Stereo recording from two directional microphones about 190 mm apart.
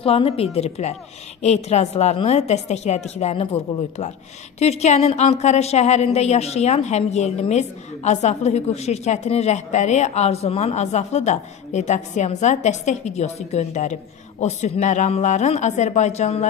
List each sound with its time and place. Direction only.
0.0 s a woman's voice: 30° left (ahead or behind)